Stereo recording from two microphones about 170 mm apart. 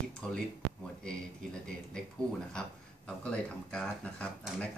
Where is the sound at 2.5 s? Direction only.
5° left (ahead or behind).